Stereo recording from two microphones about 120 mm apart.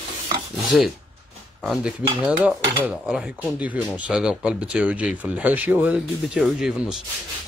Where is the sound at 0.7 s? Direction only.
5° right (ahead or behind).